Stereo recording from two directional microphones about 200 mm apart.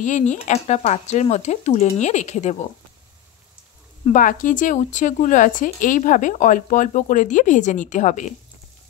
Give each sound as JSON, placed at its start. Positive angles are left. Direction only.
{"t": 0.0, "sound": "speech", "side_deg": 35}
{"t": 4.0, "sound": "speech", "side_deg": 40}